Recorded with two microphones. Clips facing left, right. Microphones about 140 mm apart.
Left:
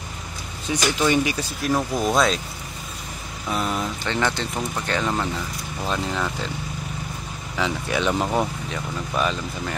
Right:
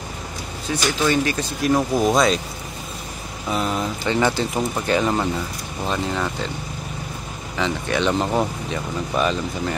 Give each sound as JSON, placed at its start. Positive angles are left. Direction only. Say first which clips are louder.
{"t": 0.7, "sound": "speech", "louder": "even", "side_deg": 15}
{"t": 1.6, "sound": "speech", "louder": "right 4 dB", "side_deg": 0}
{"t": 3.4, "sound": "speech", "louder": "right 2 dB", "side_deg": 0}
{"t": 7.5, "sound": "speech", "louder": "right 2 dB", "side_deg": 5}
{"t": 8.3, "sound": "speech", "louder": "right 2 dB", "side_deg": -5}